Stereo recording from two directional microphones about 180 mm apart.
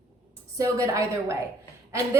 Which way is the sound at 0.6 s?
15° right (ahead or behind).